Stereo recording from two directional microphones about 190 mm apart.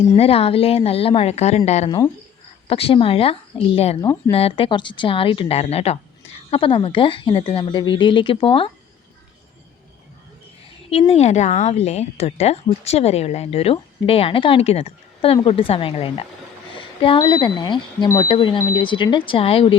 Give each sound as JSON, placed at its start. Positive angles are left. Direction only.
{"t": 0.2, "sound": "a woman's voice", "side_deg": 30}
{"t": 11.1, "sound": "a woman's voice", "side_deg": 35}